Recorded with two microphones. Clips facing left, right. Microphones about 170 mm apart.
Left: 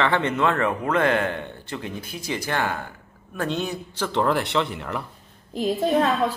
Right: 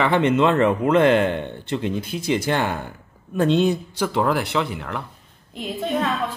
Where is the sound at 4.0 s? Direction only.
5° right (ahead or behind).